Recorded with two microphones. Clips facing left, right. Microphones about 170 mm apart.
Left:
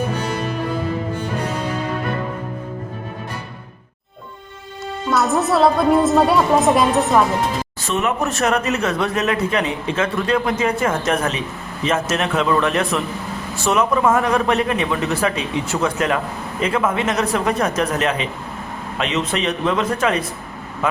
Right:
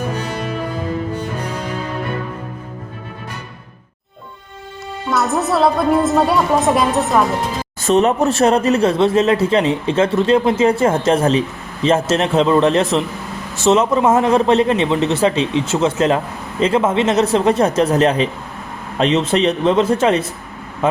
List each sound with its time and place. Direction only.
5.1 s a woman's voice: centre (ahead or behind)
7.9 s speech: 35° right (ahead or behind)